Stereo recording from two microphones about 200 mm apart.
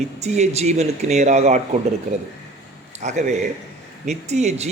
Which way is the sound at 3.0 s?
35° right (ahead or behind).